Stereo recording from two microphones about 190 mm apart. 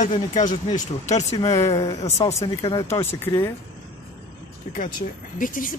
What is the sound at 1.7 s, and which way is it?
Speech, 30° left (ahead or behind).